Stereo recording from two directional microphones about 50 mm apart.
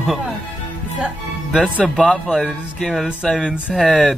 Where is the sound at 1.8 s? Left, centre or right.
Centre.